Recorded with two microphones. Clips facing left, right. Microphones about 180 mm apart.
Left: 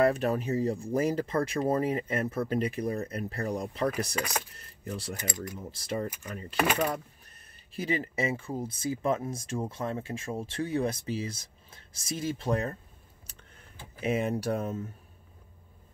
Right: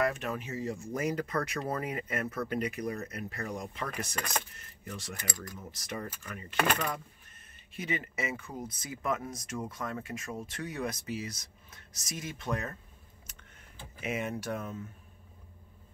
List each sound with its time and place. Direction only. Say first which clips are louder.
0.0 s speech: left 7 dB; 35° left (ahead or behind)
4.1 s speech: left 3 dB; 10° left (ahead or behind)
4.6 s speech: left 5 dB; 35° left (ahead or behind)
5.1 s speech: left 5 dB; 20° left (ahead or behind)
6.5 s speech: left 3 dB; 5° left (ahead or behind)
7.7 s speech: left 5 dB; 35° left (ahead or behind)
14.0 s speech: left 6 dB; 35° left (ahead or behind)